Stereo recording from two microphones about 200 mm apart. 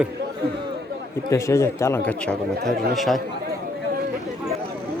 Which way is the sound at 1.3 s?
15° left (ahead or behind).